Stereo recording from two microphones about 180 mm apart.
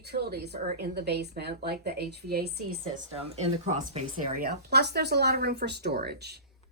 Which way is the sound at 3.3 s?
40° right (ahead or behind).